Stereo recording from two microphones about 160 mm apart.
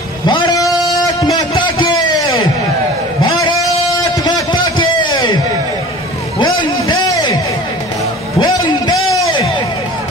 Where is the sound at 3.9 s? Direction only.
25° left (ahead or behind).